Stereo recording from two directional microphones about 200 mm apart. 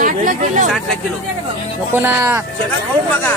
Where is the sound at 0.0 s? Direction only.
40° right (ahead or behind).